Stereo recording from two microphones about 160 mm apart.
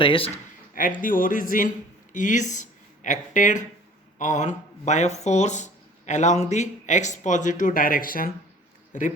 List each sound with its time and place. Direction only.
0.0 s speech: 35° left (ahead or behind)
0.7 s a sound: 60° left (ahead or behind)
1.0 s speech: 55° left (ahead or behind)